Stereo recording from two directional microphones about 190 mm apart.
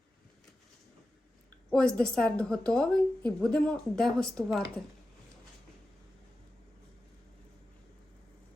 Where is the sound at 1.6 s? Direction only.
5° left (ahead or behind).